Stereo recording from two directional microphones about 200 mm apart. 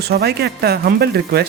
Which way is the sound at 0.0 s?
55° right (ahead or behind).